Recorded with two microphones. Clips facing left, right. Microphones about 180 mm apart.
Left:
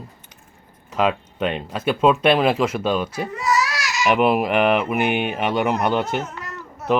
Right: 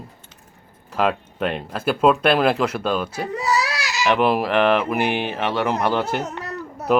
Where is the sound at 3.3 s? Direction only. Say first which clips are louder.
Even; 35° right (ahead or behind).